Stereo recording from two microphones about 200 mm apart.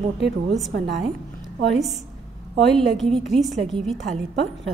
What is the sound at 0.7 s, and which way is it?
Speech, 60° right (ahead or behind).